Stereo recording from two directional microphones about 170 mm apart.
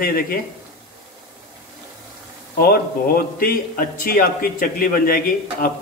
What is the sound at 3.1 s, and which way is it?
A man's voice, 55° left (ahead or behind).